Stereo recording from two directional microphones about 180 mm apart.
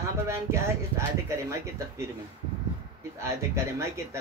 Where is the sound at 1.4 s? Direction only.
15° right (ahead or behind).